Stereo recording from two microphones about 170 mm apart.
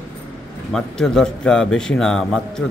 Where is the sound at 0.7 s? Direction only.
5° left (ahead or behind).